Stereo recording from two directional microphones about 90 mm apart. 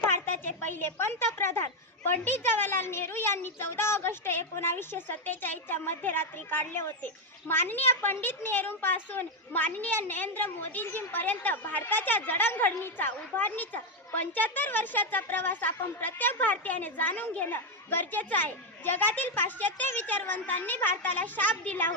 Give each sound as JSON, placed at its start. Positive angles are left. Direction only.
{"t": 0.0, "sound": "a woman's voice", "side_deg": 25}